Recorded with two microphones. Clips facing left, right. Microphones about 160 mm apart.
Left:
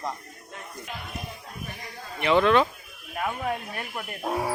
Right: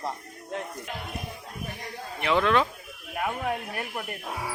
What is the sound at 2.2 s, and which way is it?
Speech, centre (ahead or behind).